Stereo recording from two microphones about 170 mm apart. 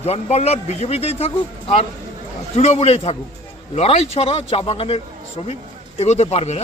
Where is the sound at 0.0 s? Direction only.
40° left (ahead or behind).